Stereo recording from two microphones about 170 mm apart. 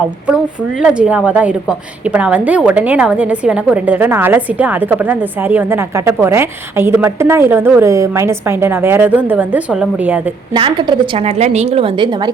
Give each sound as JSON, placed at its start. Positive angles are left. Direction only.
{"t": 0.8, "sound": "a woman's voice", "side_deg": -5}
{"t": 10.5, "sound": "a woman's voice", "side_deg": -25}
{"t": 11.3, "sound": "a woman's voice", "side_deg": -40}